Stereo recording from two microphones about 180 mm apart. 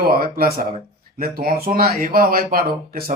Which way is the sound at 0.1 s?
55° right (ahead or behind).